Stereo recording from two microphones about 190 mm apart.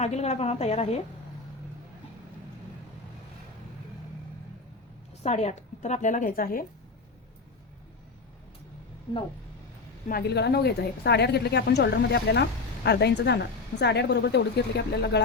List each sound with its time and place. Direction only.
0.0 s a woman's voice: 35° left (ahead or behind)
5.2 s a woman's voice: 35° left (ahead or behind)
10.1 s a woman's voice: 55° left (ahead or behind)